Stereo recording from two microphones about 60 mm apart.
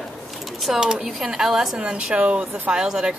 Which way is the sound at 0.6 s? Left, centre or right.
Centre.